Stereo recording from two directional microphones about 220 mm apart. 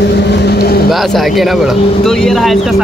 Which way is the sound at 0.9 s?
Centre (ahead or behind).